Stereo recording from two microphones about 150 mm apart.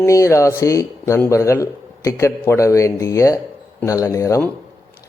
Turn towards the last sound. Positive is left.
turn(degrees=20)  # may be behind; listen again after turning